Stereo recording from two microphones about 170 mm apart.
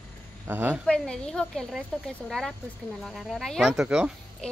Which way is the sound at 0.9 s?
5° left (ahead or behind).